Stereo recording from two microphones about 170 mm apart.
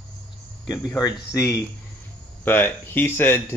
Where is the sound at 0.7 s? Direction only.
20° left (ahead or behind).